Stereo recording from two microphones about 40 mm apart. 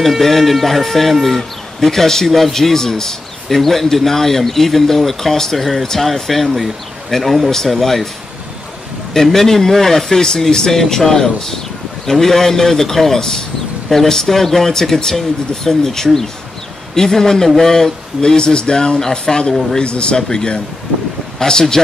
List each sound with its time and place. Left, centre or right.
0.0 s speech: centre
9.1 s speech: centre